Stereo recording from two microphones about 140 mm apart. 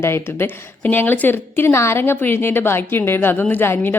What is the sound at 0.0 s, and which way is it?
A woman's voice, 15° left (ahead or behind).